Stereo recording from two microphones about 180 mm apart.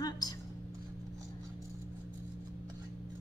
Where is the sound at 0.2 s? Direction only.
20° left (ahead or behind).